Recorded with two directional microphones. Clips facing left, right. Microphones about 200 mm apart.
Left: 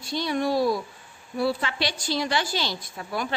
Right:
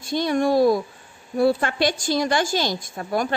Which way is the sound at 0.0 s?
50° right (ahead or behind).